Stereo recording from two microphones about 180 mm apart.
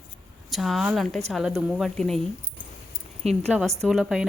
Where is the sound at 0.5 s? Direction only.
Centre (ahead or behind).